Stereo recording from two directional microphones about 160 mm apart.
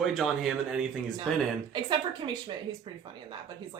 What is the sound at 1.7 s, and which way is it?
Speech, 30° right (ahead or behind).